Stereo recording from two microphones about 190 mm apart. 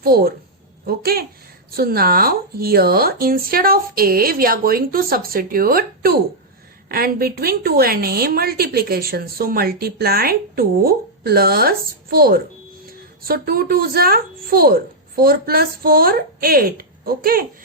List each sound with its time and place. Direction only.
0.0 s a woman's voice: 50° right (ahead or behind)